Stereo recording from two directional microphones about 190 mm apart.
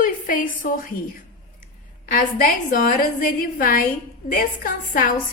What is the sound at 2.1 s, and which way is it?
A woman's voice, 45° left (ahead or behind).